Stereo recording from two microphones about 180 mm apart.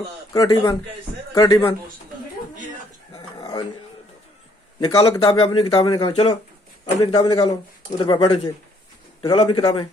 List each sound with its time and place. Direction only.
0.3 s speech: 25° left (ahead or behind)
3.2 s dog: 25° left (ahead or behind)
4.7 s a man's voice: 30° left (ahead or behind)